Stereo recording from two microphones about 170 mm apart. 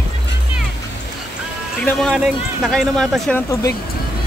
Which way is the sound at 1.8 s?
Centre (ahead or behind).